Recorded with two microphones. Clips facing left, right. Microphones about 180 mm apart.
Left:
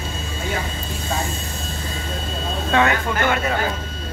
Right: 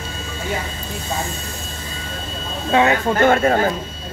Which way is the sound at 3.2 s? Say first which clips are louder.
Right 8 dB; 45° right (ahead or behind).